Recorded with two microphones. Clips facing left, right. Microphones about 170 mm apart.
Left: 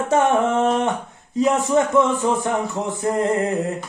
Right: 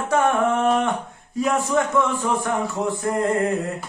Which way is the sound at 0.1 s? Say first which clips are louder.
Left 1 dB; 25° left (ahead or behind).